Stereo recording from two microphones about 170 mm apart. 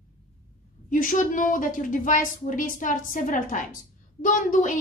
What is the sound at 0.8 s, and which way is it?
A woman's voice, 50° left (ahead or behind).